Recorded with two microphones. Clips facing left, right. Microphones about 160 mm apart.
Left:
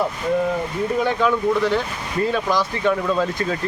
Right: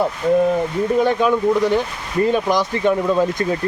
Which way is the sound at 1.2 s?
15° right (ahead or behind).